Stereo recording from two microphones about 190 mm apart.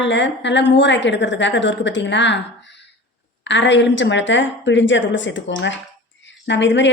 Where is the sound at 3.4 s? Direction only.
70° left (ahead or behind).